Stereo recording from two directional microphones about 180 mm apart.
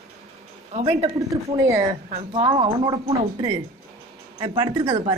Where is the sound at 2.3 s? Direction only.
30° right (ahead or behind).